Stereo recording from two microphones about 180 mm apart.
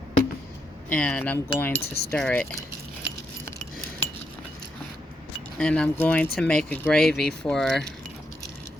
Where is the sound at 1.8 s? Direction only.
60° left (ahead or behind).